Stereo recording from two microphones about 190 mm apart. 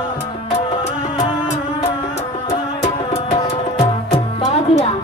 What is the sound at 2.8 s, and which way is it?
Music, 35° left (ahead or behind).